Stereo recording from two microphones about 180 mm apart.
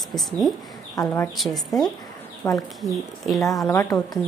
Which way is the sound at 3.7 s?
20° left (ahead or behind).